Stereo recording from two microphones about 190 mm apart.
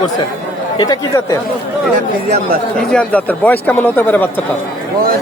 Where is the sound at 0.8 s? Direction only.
20° left (ahead or behind).